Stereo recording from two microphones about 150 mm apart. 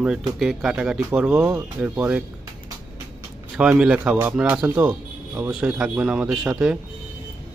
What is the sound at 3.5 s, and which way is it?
Speech, 5° right (ahead or behind).